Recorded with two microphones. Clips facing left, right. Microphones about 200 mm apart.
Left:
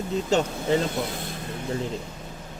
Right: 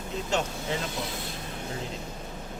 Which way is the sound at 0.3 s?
35° left (ahead or behind).